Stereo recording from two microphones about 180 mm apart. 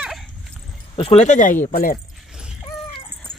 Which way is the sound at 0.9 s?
35° left (ahead or behind).